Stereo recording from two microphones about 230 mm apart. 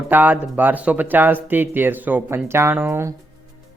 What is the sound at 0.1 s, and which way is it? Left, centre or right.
Speech, centre.